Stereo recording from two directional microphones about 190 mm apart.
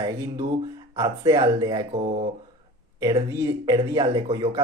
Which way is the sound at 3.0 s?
20° right (ahead or behind).